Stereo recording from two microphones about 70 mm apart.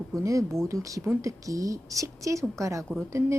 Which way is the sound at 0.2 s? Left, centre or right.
Right.